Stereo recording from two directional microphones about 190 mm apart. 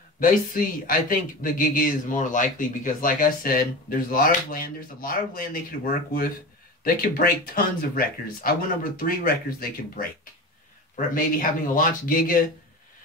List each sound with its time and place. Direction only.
0.2 s speech: 45° left (ahead or behind)